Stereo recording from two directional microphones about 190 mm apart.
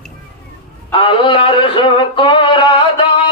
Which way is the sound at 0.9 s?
25° left (ahead or behind).